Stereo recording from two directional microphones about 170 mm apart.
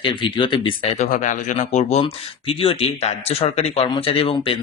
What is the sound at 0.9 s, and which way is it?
Speech, 45° left (ahead or behind).